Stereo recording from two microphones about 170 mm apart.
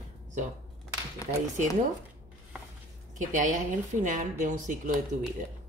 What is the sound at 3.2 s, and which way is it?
Speech, 50° right (ahead or behind).